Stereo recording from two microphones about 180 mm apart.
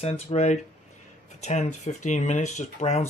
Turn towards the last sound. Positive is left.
turn(degrees=40)  # may be behind; listen again after turning